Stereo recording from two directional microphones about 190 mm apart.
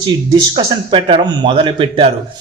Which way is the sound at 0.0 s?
25° right (ahead or behind).